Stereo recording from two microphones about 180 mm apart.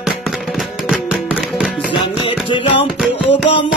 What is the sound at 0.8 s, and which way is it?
Music, 5° right (ahead or behind).